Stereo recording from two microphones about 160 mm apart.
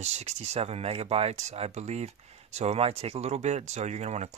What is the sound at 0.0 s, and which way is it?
Speech, 45° right (ahead or behind).